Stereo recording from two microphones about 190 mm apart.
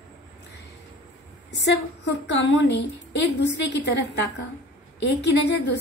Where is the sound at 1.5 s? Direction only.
65° left (ahead or behind).